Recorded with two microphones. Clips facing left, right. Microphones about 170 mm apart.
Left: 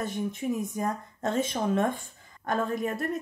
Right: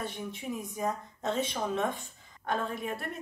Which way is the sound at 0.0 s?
50° left (ahead or behind).